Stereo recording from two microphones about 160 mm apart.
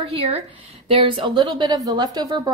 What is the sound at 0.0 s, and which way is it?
A woman's voice, 35° right (ahead or behind).